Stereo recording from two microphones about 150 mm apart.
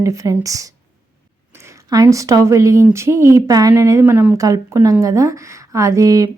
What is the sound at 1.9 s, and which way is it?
A woman's voice, 20° right (ahead or behind).